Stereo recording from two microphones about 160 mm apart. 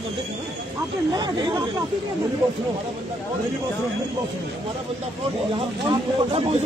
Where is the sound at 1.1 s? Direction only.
30° right (ahead or behind).